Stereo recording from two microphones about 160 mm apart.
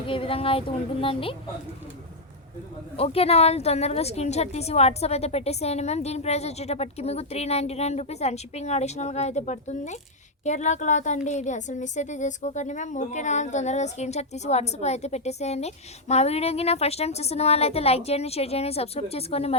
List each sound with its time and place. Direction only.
0.1 s a woman's voice: 35° left (ahead or behind)
3.0 s a woman's voice: 40° left (ahead or behind)